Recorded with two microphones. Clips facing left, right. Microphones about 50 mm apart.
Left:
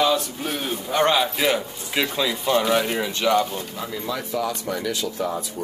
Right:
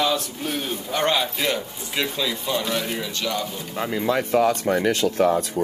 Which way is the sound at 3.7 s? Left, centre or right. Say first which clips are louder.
Right 10 dB; right.